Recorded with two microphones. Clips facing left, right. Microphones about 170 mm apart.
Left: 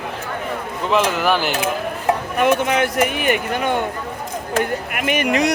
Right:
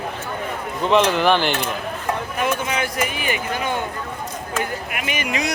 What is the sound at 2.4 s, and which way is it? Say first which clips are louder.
Speech: left 7 dB; 60° left (ahead or behind).